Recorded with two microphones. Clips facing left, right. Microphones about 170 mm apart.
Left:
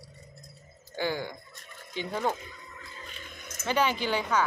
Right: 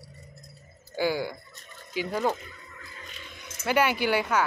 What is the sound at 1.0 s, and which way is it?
Speech, 10° right (ahead or behind).